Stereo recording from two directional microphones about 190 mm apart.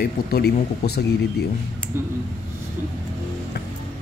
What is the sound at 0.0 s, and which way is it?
Speech, 55° left (ahead or behind).